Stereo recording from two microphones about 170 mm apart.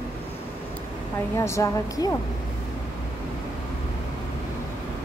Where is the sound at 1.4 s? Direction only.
15° left (ahead or behind).